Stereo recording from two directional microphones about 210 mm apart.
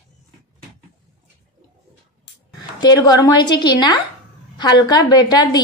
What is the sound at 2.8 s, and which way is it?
A woman's voice, 20° left (ahead or behind).